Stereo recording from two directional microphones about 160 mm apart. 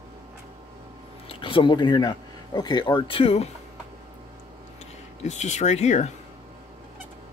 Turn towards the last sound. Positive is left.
turn(degrees=45)  # may be behind; listen again after turning